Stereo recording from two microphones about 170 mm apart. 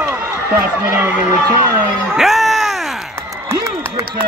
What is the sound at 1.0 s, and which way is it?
Speech, 20° right (ahead or behind).